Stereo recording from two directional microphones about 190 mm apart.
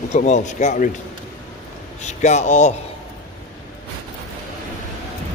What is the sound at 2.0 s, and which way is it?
Speech, 35° left (ahead or behind).